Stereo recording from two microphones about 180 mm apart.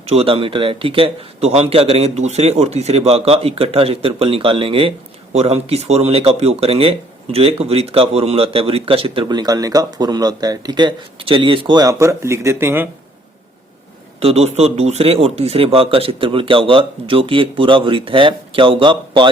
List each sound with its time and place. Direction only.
0.0 s a man's voice: 35° right (ahead or behind); by 12.9 s 10° right (ahead or behind)
14.2 s a man's voice: 35° right (ahead or behind)